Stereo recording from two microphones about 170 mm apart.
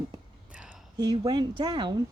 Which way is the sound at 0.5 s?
5° right (ahead or behind).